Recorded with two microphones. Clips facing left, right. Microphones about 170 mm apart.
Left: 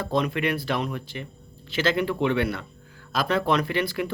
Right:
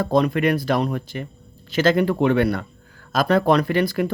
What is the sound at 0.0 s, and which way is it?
Speech, 40° right (ahead or behind).